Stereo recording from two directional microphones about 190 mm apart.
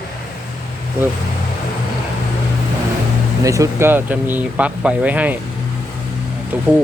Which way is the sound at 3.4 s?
15° right (ahead or behind).